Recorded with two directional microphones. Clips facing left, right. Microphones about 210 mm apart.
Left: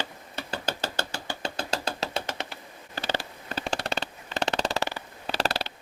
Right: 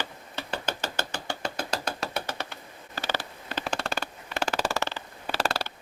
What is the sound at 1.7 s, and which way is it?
Knock, 25° left (ahead or behind).